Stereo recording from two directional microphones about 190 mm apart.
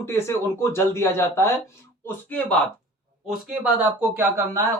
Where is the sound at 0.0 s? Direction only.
15° left (ahead or behind).